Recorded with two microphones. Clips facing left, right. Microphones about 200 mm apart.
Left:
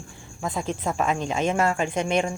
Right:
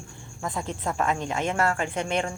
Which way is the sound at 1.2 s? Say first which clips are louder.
Left 3 dB; 25° left (ahead or behind).